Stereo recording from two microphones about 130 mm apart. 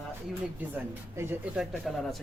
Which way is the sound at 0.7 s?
20° right (ahead or behind).